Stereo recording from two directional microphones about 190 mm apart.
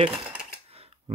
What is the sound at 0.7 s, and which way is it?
Cutlery, 30° right (ahead or behind).